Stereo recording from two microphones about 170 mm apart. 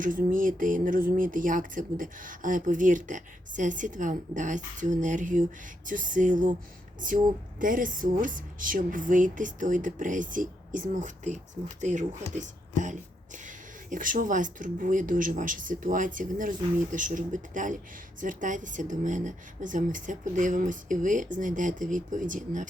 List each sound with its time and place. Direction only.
0.0 s speech: 55° right (ahead or behind)
7.6 s speech: 55° right (ahead or behind)